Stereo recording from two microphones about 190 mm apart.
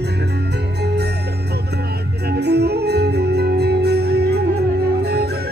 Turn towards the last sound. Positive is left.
turn(degrees=-55)  # may be behind; listen again after turning